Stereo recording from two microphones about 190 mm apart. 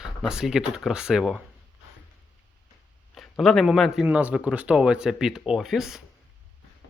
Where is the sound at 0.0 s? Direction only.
5° right (ahead or behind).